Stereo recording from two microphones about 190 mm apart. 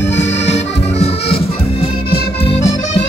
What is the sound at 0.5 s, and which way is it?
Accordion, 35° left (ahead or behind).